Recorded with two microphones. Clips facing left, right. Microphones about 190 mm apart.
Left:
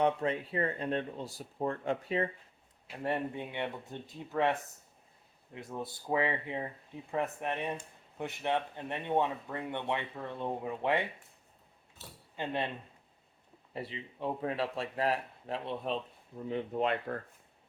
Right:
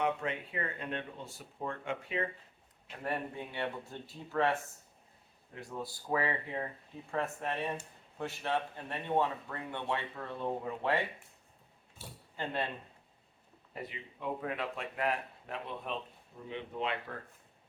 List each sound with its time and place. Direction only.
0.0 s speech: 35° left (ahead or behind)
3.0 s speech: 20° left (ahead or behind)
5.5 s speech: 20° left (ahead or behind)
12.0 s speech: 10° right (ahead or behind)
13.8 s speech: 30° left (ahead or behind)
16.5 s speech: 45° left (ahead or behind)